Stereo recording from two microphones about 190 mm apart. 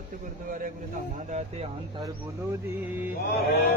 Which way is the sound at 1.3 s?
35° right (ahead or behind).